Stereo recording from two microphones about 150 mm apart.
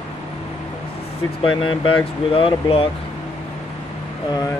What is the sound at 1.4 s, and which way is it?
Speech, 35° left (ahead or behind).